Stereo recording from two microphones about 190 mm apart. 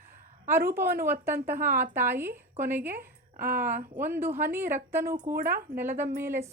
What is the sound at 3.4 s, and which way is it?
Speech, 50° right (ahead or behind).